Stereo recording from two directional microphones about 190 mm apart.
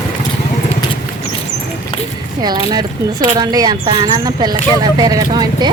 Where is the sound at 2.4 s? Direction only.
20° right (ahead or behind).